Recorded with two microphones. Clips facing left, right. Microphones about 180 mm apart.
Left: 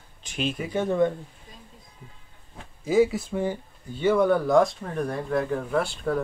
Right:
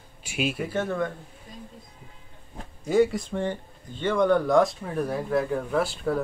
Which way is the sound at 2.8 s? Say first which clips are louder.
Left 1 dB; 5° left (ahead or behind).